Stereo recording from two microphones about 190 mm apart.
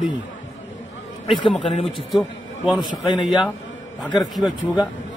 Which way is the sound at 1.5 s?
25° left (ahead or behind).